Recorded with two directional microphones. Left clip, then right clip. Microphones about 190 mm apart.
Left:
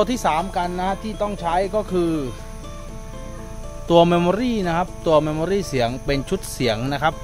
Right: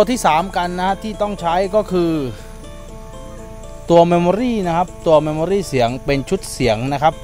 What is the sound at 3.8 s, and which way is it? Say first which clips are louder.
Speech: right 4 dB; 30° right (ahead or behind).